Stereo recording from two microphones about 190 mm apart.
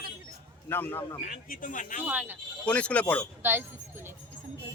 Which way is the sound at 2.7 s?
5° left (ahead or behind).